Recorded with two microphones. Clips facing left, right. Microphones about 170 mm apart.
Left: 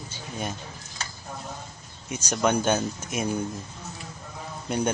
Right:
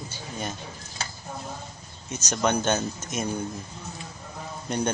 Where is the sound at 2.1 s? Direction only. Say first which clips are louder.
Left 1 dB; 5° left (ahead or behind).